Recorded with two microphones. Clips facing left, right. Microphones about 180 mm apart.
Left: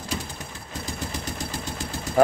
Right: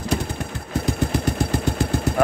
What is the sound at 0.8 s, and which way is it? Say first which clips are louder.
Vehicle: right 10 dB; 60° right (ahead or behind).